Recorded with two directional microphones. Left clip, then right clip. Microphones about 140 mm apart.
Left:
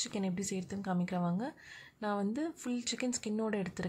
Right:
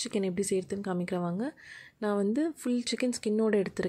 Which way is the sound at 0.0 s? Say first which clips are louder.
Right 7 dB; 25° right (ahead or behind).